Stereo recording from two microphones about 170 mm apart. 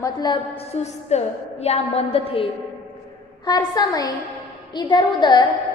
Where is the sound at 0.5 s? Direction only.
35° left (ahead or behind).